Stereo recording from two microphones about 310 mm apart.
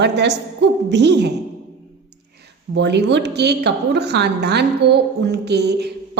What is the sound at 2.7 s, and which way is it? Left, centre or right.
A woman's voice, right.